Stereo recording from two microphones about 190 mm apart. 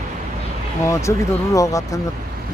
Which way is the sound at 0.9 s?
15° left (ahead or behind).